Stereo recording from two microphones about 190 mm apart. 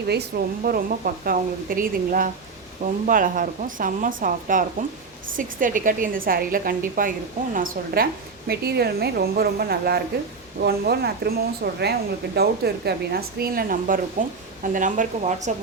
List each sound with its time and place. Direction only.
0.1 s a woman's voice: 55° right (ahead or behind)